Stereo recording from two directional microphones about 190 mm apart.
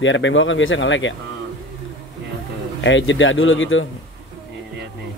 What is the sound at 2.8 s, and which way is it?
Speech, 80° left.